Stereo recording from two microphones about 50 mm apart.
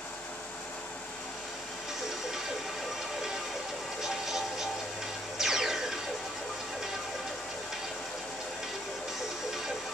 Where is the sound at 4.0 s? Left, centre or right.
Centre.